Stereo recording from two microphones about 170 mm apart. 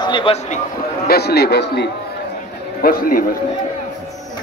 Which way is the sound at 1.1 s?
70° left (ahead or behind).